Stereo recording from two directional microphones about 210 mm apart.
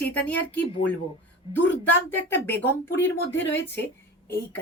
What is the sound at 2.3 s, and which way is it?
Speech, 10° left (ahead or behind).